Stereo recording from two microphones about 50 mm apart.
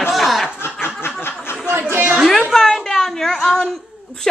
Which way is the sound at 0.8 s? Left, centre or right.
Left.